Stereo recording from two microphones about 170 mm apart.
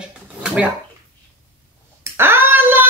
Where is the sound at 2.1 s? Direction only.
15° right (ahead or behind).